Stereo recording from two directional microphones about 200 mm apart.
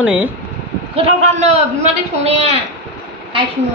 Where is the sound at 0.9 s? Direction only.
35° right (ahead or behind).